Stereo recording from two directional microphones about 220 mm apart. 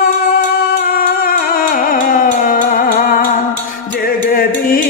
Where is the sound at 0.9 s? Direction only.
40° left (ahead or behind).